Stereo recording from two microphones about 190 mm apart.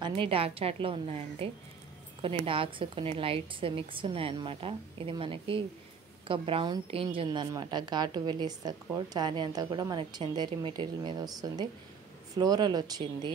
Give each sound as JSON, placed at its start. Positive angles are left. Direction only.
{"t": 0.0, "sound": "a woman's voice", "side_deg": -25}